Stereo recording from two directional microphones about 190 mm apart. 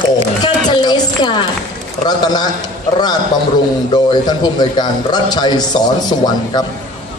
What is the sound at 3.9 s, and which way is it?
A man's voice, 20° left (ahead or behind).